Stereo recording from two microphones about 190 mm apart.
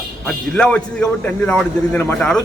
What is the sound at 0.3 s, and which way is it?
A man's voice, 5° left (ahead or behind).